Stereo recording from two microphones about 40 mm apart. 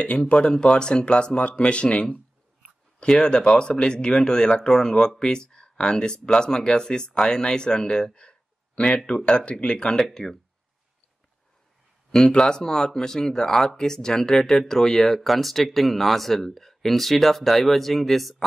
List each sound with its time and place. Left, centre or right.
0.2 s speech: left
9.9 s speech: centre
12.3 s speech: centre